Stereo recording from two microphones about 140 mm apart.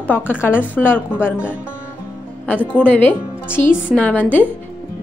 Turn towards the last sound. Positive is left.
turn(degrees=10)  # may be behind; listen again after turning